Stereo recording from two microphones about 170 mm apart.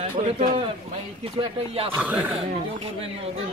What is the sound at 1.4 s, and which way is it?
Speech, 30° right (ahead or behind).